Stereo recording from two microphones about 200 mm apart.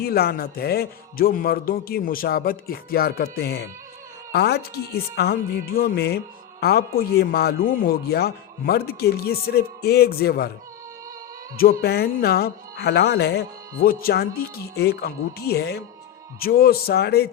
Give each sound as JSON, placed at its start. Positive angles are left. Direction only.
{"t": 0.0, "sound": "a woman's voice", "side_deg": 50}
{"t": 11.5, "sound": "a woman's voice", "side_deg": 50}